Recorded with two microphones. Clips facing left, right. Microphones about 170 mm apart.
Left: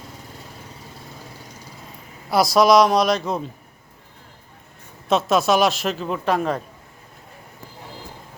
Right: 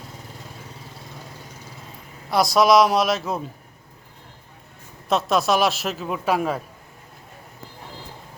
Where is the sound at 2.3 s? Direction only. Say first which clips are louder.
Left 1 dB; centre (ahead or behind).